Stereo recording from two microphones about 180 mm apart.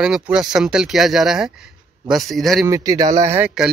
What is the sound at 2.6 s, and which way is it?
Speech, 20° right (ahead or behind).